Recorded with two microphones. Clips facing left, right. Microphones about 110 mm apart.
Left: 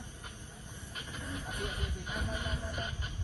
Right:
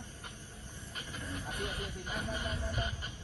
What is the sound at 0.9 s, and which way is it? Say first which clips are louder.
Speech: even; centre (ahead or behind).